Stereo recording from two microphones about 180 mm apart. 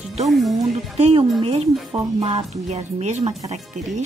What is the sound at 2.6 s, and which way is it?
Speech, 40° right (ahead or behind).